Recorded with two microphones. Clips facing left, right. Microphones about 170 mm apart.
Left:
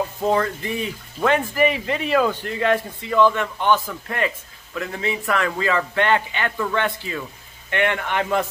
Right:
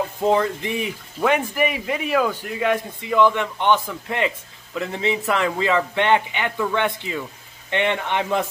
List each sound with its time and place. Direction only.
0.2 s speech: 20° right (ahead or behind)